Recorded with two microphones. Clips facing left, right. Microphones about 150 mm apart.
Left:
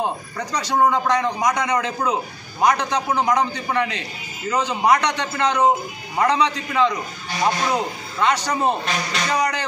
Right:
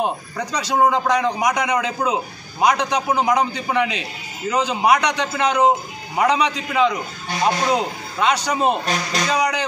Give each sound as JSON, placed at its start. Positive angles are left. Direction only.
{"t": 0.0, "sound": "a man's voice", "side_deg": -15}